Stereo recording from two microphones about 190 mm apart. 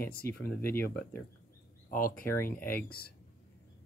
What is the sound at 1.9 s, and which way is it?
Speech, 50° left (ahead or behind).